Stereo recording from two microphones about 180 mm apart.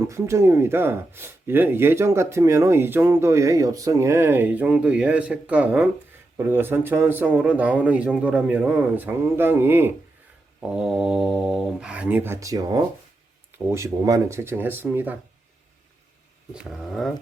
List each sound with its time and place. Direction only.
0.1 s speech: 15° right (ahead or behind)
16.6 s speech: centre (ahead or behind)